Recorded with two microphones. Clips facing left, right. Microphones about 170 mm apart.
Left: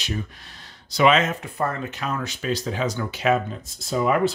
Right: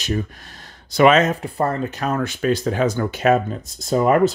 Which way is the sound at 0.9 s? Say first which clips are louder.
Right 5 dB; 50° right (ahead or behind).